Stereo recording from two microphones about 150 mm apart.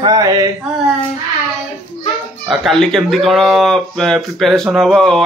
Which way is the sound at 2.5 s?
Centre (ahead or behind).